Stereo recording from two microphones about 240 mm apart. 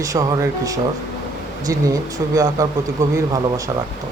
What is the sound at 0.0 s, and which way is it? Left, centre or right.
Speech, centre.